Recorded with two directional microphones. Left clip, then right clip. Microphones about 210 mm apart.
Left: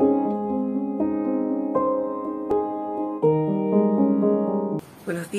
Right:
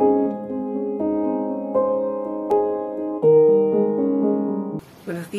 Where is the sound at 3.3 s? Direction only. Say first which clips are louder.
Right 8 dB; 70° left (ahead or behind).